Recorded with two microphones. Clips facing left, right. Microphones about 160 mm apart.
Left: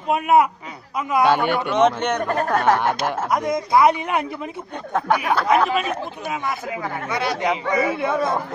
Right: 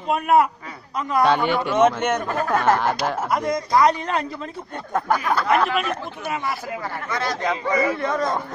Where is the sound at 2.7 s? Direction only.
15° left (ahead or behind).